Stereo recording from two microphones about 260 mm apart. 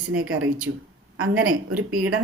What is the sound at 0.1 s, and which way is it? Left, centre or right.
A woman's voice, right.